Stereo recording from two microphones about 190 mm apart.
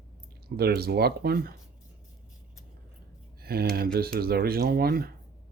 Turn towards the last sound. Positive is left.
turn(degrees=-50)  # may be behind; listen again after turning